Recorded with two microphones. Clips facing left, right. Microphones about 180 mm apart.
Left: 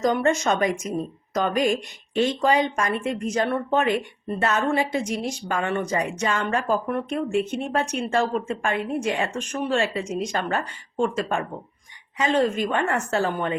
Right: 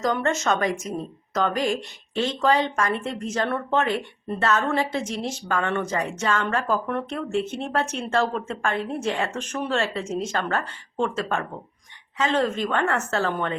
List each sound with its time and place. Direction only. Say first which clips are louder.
0.0 s speech: left 3 dB; 15° left (ahead or behind)